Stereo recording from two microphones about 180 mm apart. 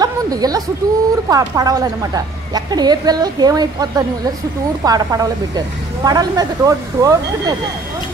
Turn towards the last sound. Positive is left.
turn(degrees=-20)  # may be behind; listen again after turning